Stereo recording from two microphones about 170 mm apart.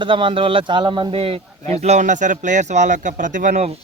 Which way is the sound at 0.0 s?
30° right (ahead or behind).